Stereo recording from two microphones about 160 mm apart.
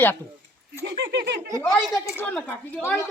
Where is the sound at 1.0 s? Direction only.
90° right.